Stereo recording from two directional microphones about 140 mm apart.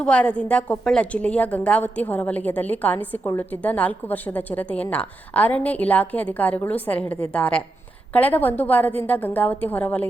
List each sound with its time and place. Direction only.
0.0 s a woman's voice: 10° left (ahead or behind)